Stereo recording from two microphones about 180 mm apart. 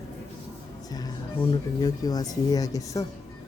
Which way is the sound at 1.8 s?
20° left (ahead or behind).